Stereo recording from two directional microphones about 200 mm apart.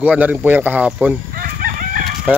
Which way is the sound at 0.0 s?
5° right (ahead or behind).